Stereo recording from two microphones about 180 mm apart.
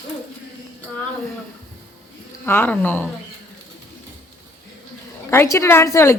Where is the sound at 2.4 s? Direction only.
10° left (ahead or behind).